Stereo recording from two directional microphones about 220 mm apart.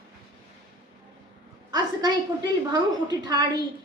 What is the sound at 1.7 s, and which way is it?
A woman's voice, 20° right (ahead or behind).